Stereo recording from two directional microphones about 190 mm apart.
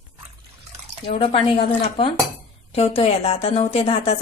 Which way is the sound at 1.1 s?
30° left (ahead or behind).